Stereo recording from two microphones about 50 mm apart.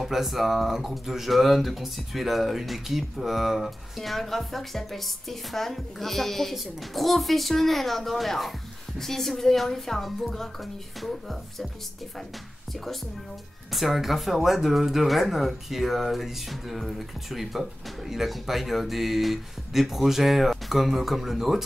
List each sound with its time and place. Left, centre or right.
0.0 s speech: centre
13.7 s speech: centre